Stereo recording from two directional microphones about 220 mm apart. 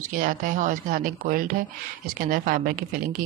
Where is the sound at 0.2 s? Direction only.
40° right (ahead or behind).